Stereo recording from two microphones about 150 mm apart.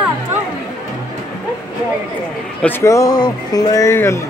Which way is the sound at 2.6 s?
15° left (ahead or behind).